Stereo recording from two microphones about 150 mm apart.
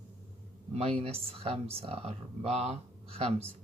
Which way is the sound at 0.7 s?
40° right (ahead or behind).